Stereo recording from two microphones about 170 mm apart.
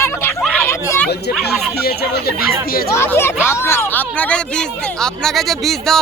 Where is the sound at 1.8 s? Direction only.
65° left (ahead or behind).